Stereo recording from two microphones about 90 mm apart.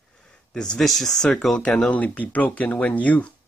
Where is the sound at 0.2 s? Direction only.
10° left (ahead or behind).